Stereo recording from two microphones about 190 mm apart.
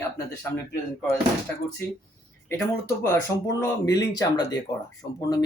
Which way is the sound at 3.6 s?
20° left (ahead or behind).